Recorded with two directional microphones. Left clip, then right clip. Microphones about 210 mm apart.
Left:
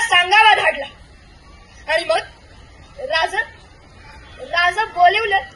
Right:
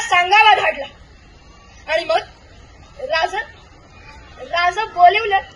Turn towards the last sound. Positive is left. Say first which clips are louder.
# right 2 dB
turn(degrees=15)  # may be behind; listen again after turning